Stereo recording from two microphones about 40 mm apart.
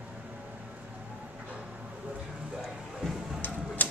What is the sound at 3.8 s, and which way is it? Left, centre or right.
Typewriter, left.